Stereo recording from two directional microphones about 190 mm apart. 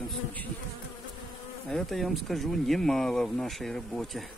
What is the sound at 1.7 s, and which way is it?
Speech, centre (ahead or behind).